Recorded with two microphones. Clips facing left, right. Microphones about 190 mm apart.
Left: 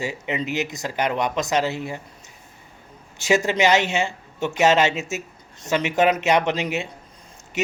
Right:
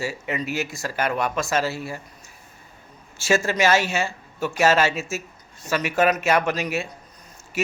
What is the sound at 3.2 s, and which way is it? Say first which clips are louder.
Speech: left 2 dB; 20° left (ahead or behind).